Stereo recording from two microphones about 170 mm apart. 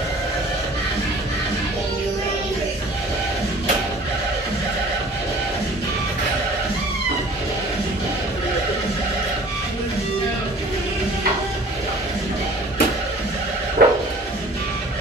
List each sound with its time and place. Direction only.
13.8 s music: 70° right (ahead or behind)